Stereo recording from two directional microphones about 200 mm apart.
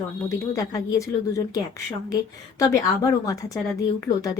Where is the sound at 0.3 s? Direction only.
15° left (ahead or behind).